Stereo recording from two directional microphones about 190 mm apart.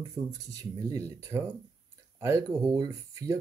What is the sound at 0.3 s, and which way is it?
Speech, 20° right (ahead or behind).